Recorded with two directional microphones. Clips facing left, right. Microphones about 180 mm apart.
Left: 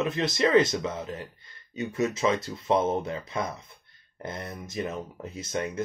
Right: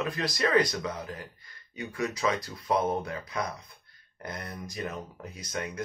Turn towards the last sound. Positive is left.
turn(degrees=25)  # may be behind; listen again after turning